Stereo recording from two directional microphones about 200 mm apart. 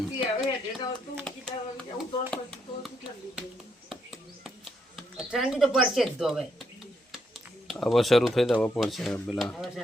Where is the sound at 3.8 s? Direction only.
Centre (ahead or behind).